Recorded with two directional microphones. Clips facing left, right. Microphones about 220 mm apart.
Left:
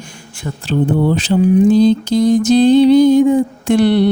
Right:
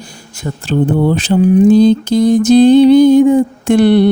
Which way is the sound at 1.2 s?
55° right (ahead or behind).